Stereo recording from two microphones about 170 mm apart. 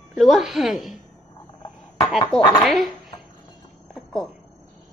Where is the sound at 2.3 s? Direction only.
Centre (ahead or behind).